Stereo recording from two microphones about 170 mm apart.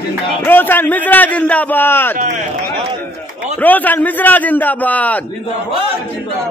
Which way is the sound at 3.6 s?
10° left (ahead or behind).